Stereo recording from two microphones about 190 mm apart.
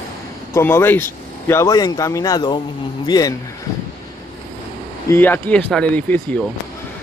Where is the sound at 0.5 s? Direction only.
10° left (ahead or behind).